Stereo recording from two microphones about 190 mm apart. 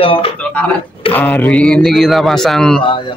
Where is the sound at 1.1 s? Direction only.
10° left (ahead or behind).